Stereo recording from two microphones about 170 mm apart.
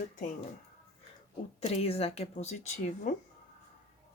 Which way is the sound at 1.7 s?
35° left (ahead or behind).